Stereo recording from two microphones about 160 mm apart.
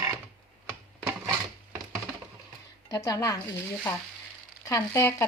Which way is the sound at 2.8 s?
25° left (ahead or behind).